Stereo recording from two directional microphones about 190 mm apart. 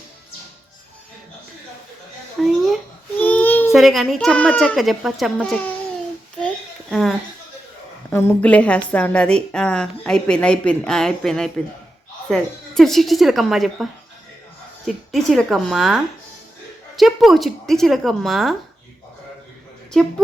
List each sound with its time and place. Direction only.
2.4 s a sound: centre (ahead or behind)
3.2 s child singing: 10° left (ahead or behind)
3.7 s a woman's voice: centre (ahead or behind)
6.9 s a woman's voice: centre (ahead or behind)
14.8 s a woman's voice: centre (ahead or behind)
17.0 s a woman's voice: centre (ahead or behind)
19.9 s a woman's voice: 5° left (ahead or behind)